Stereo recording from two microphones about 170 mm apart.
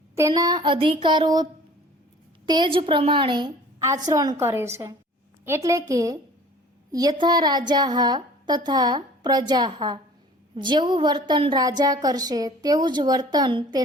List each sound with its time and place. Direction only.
0.2 s a woman's voice: 20° right (ahead or behind)
2.5 s a woman's voice: 30° right (ahead or behind)